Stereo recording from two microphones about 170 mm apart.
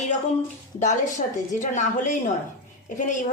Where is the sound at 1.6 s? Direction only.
45° left (ahead or behind).